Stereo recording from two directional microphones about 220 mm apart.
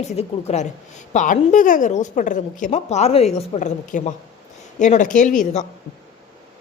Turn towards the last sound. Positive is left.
turn(degrees=35)  # may be behind; listen again after turning